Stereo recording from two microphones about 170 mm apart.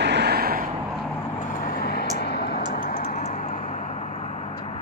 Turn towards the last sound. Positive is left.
turn(degrees=35)  # may be behind; listen again after turning